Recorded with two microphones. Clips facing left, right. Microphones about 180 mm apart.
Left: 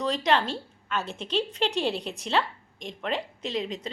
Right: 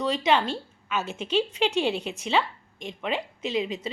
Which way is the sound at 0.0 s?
Centre (ahead or behind).